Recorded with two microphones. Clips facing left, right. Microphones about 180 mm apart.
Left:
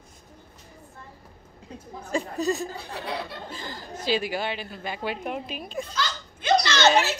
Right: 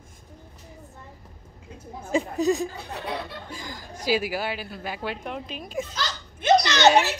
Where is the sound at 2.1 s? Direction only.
15° right (ahead or behind); by 5.7 s 5° left (ahead or behind).